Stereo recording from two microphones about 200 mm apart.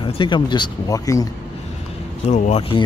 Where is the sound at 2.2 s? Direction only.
35° left (ahead or behind).